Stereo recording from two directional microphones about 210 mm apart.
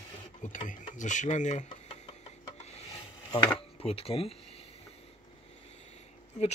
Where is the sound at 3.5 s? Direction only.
25° left (ahead or behind).